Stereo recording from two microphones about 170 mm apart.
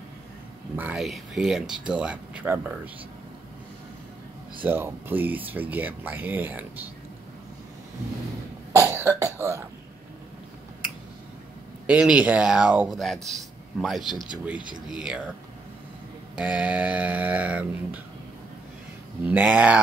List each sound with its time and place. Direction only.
0.7 s speech: 5° right (ahead or behind)
4.6 s speech: 10° right (ahead or behind)
8.7 s cough: 15° right (ahead or behind)
11.8 s speech: 5° right (ahead or behind)
16.3 s speech: 5° right (ahead or behind)
19.2 s speech: 10° right (ahead or behind)